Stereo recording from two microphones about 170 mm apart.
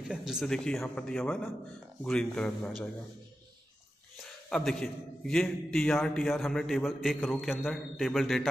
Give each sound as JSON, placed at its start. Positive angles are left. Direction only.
{"t": 0.1, "sound": "a man's voice", "side_deg": -5}
{"t": 4.2, "sound": "a man's voice", "side_deg": 0}